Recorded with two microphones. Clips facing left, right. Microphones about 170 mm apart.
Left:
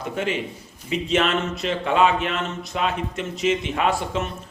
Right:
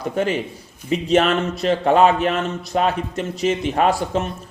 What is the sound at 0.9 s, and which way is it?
A man's voice, 40° right (ahead or behind).